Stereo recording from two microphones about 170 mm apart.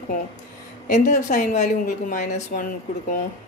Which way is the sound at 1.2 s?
45° left (ahead or behind).